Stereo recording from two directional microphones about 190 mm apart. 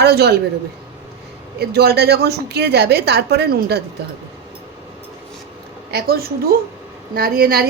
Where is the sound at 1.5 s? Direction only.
60° right (ahead or behind).